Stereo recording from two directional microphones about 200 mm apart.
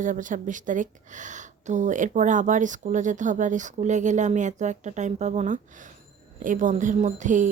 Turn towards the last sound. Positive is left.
turn(degrees=-40)  # may be behind; listen again after turning